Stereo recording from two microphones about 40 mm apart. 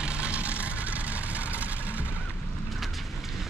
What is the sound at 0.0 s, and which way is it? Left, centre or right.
Vehicle, right.